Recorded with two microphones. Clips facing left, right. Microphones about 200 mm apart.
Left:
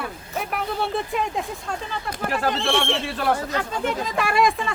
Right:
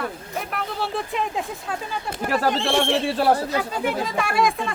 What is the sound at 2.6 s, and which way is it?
Speech, 30° right (ahead or behind).